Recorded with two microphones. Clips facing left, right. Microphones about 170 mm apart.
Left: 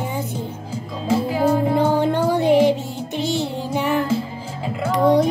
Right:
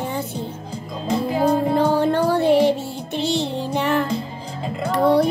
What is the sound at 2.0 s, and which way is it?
Music, 15° left (ahead or behind).